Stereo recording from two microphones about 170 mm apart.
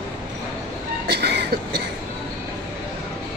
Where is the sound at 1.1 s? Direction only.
75° right (ahead or behind).